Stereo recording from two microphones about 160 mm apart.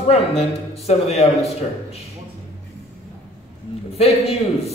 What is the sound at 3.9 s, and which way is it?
Speech, 40° left (ahead or behind).